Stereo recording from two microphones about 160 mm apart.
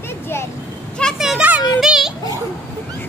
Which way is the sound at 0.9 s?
Centre (ahead or behind).